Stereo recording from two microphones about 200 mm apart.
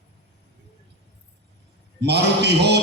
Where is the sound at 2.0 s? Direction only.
55° right (ahead or behind).